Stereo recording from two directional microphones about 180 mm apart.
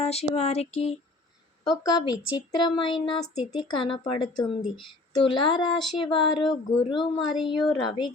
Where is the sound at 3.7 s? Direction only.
30° left (ahead or behind).